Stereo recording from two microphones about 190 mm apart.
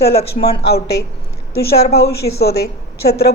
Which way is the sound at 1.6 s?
55° left (ahead or behind).